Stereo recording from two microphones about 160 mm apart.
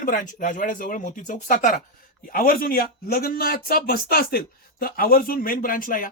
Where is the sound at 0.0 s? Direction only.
55° left (ahead or behind).